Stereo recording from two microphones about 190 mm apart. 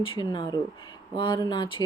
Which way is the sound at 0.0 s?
25° left (ahead or behind).